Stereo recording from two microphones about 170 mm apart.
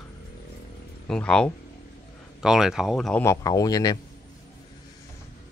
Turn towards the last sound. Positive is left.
turn(degrees=20)  # may be behind; listen again after turning